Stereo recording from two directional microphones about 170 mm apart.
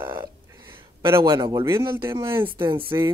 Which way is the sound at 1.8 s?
15° right (ahead or behind).